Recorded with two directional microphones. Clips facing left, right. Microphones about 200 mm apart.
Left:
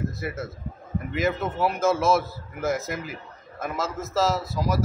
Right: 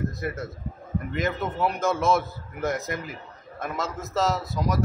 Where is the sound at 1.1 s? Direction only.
5° left (ahead or behind).